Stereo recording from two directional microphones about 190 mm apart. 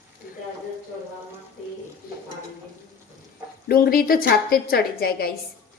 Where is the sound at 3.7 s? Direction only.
50° left (ahead or behind).